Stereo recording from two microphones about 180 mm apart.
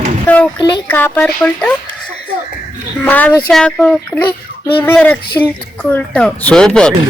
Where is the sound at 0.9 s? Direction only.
10° left (ahead or behind).